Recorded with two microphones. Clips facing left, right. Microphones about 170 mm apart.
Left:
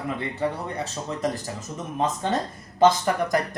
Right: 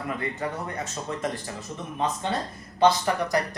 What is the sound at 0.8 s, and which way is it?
Speech, 40° left (ahead or behind).